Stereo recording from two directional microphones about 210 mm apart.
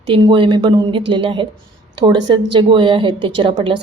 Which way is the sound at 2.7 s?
25° right (ahead or behind).